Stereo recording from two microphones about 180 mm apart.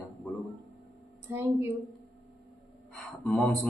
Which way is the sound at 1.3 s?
15° right (ahead or behind).